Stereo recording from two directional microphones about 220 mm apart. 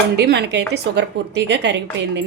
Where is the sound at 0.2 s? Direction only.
50° right (ahead or behind).